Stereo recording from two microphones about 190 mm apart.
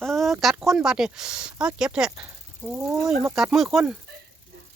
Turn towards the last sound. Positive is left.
turn(degrees=-5)  # may be behind; listen again after turning